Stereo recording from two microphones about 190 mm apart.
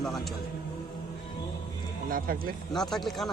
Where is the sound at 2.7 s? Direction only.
Centre (ahead or behind).